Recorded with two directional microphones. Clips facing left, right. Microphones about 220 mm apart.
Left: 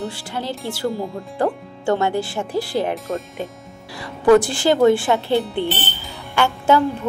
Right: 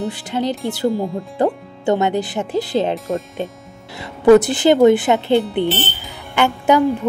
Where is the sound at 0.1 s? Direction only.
20° right (ahead or behind).